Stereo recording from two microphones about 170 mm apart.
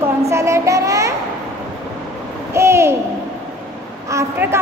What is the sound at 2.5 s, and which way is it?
Speech, 15° right (ahead or behind).